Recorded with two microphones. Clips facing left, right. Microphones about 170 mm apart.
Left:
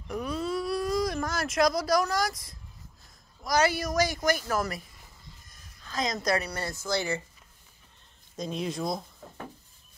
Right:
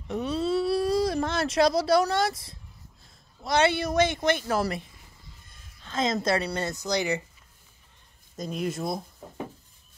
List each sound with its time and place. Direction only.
0.1 s a sound: 30° right (ahead or behind)
3.4 s speech: 25° right (ahead or behind)
8.4 s speech: 5° right (ahead or behind)